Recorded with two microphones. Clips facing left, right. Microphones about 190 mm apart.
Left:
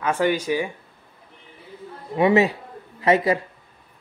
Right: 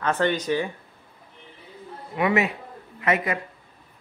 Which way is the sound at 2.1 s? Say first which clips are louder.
Left 5 dB; 30° left (ahead or behind).